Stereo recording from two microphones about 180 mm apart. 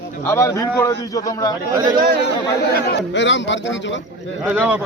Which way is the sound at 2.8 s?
80° left.